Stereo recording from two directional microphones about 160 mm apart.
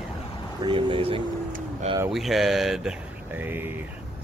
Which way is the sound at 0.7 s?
30° right (ahead or behind).